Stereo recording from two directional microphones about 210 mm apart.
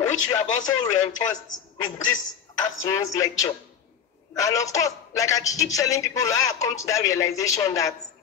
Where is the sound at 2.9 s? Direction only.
15° left (ahead or behind).